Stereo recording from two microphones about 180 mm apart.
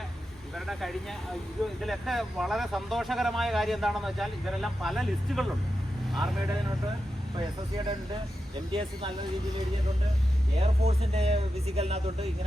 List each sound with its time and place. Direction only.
0.5 s vehicle: centre (ahead or behind)
1.8 s speech: centre (ahead or behind)
8.7 s speech: 30° right (ahead or behind)
10.6 s speech: 35° right (ahead or behind)